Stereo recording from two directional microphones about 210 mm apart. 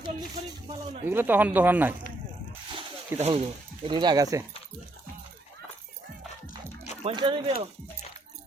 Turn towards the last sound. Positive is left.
turn(degrees=-25)  # may be behind; listen again after turning